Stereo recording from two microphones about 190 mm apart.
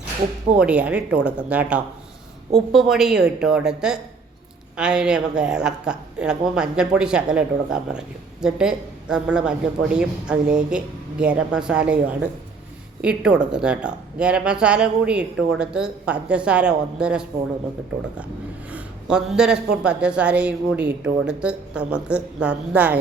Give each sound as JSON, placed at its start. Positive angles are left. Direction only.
{"t": 0.5, "sound": "a woman's voice", "side_deg": -5}
{"t": 18.7, "sound": "a woman's voice", "side_deg": -5}